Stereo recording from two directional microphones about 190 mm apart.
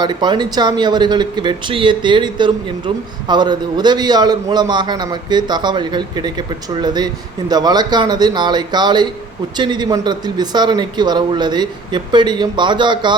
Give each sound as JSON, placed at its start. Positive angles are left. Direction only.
{"t": 0.0, "sound": "speech", "side_deg": -25}